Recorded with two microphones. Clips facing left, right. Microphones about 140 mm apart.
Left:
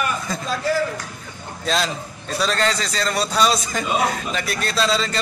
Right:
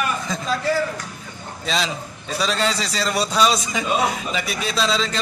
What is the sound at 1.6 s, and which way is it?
A man's voice, centre (ahead or behind).